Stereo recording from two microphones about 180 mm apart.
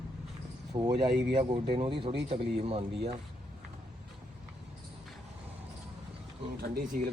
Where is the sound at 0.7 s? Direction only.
20° right (ahead or behind).